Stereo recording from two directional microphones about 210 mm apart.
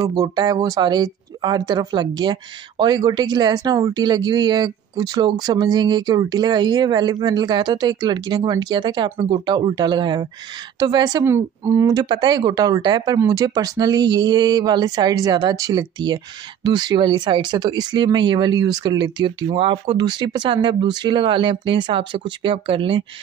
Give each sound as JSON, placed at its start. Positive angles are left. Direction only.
{"t": 0.0, "sound": "speech", "side_deg": -15}